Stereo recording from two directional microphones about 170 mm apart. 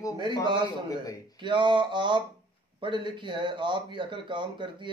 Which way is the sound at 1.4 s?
30° right (ahead or behind).